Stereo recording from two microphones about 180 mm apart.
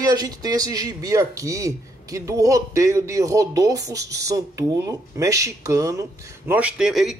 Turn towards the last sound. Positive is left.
turn(degrees=0)  # may be behind; listen again after turning